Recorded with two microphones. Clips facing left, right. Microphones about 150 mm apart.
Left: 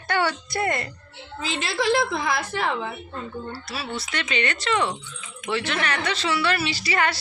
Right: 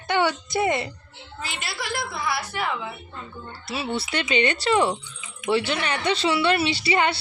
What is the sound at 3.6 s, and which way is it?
A woman's voice, 25° right (ahead or behind).